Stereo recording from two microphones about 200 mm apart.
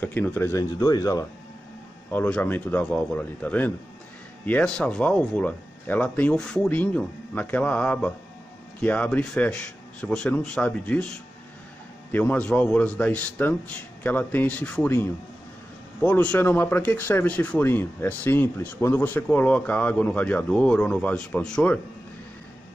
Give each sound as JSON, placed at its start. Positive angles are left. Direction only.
{"t": 0.0, "sound": "speech", "side_deg": 10}
{"t": 2.0, "sound": "speech", "side_deg": 5}